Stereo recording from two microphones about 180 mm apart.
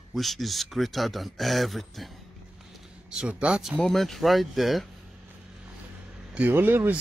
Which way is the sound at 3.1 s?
5° right (ahead or behind).